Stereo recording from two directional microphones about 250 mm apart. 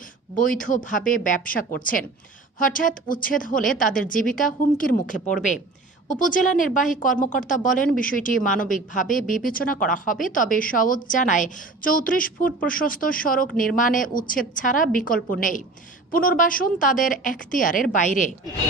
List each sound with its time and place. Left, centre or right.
0.3 s a woman's voice: left